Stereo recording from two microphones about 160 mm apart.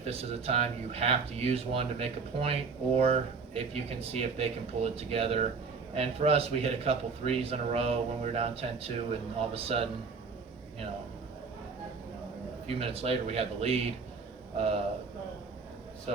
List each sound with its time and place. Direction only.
0.0 s speech: 40° right (ahead or behind)
12.6 s speech: 40° right (ahead or behind)
16.1 s speech: 40° right (ahead or behind)